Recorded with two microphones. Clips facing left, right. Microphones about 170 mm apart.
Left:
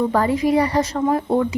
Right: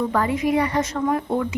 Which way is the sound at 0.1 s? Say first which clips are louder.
Left 3 dB; 35° left (ahead or behind).